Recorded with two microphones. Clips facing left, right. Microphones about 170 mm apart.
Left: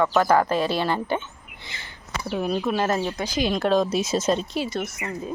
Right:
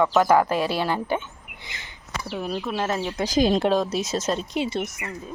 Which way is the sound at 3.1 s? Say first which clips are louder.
Right 4 dB; 40° right (ahead or behind).